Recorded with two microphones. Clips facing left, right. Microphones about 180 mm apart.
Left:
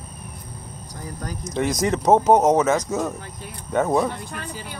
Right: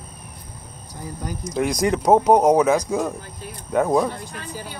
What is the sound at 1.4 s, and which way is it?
Speech, centre (ahead or behind).